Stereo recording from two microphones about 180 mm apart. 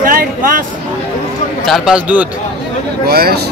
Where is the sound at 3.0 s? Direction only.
60° right (ahead or behind).